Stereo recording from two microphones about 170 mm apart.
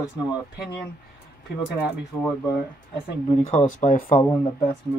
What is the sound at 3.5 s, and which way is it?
Speech, 45° left (ahead or behind).